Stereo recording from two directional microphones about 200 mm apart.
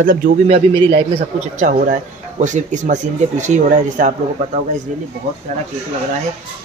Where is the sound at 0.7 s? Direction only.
25° right (ahead or behind).